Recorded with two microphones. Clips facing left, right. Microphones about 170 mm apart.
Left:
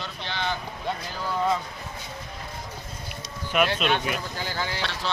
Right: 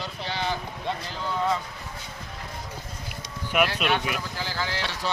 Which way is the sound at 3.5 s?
10° right (ahead or behind).